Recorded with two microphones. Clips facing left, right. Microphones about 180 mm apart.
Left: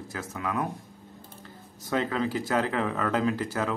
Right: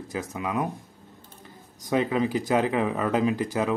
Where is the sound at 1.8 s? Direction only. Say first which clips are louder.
Right 4 dB; 15° right (ahead or behind).